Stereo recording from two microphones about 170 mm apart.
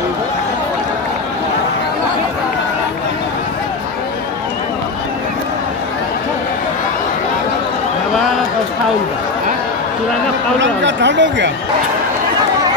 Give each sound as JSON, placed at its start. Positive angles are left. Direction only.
{"t": 10.6, "sound": "speech", "side_deg": -90}